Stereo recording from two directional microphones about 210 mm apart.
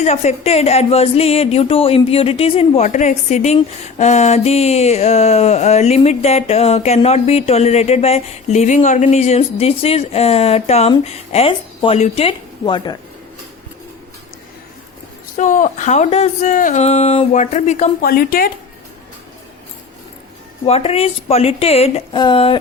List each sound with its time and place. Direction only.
0.0 s speech: 30° left (ahead or behind)
15.4 s speech: 35° left (ahead or behind)
20.7 s speech: 30° left (ahead or behind)